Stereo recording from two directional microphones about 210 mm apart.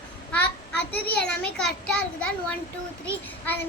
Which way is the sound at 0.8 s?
50° left (ahead or behind).